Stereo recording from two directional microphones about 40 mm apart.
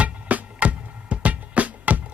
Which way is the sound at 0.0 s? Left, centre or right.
Right.